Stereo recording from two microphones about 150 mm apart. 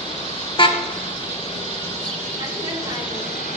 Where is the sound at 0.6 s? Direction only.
35° left (ahead or behind).